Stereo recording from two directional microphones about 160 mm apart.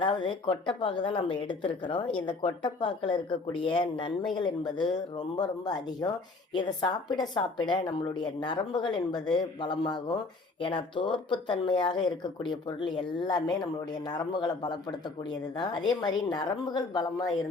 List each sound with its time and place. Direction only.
0.0 s speech: 30° left (ahead or behind)